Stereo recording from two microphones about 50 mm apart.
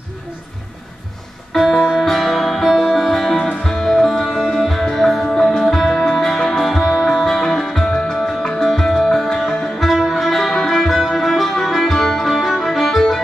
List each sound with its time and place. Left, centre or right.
1.5 s music: centre